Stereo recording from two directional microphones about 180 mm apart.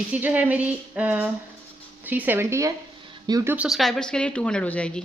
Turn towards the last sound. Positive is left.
turn(degrees=5)  # may be behind; listen again after turning